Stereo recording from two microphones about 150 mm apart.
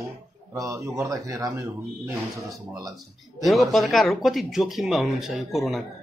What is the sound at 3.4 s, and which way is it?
Speech, centre (ahead or behind).